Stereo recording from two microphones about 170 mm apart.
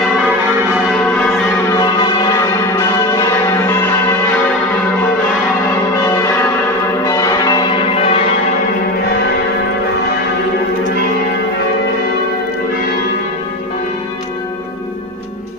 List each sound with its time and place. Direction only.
1.7 s church bell: 25° left (ahead or behind)
7.1 s change ringing: 20° left (ahead or behind)
7.9 s change ringing: 35° left (ahead or behind)